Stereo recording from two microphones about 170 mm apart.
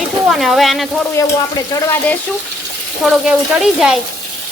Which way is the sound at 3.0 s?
Centre (ahead or behind).